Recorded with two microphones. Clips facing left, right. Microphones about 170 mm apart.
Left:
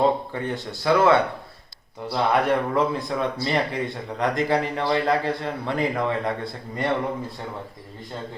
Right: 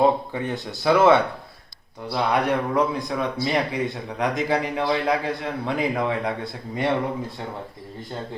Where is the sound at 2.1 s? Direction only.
Centre (ahead or behind).